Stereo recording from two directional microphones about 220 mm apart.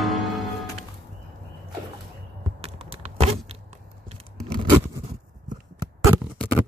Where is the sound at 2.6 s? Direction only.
25° right (ahead or behind).